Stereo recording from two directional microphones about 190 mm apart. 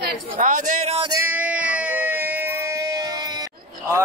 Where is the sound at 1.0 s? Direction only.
15° right (ahead or behind).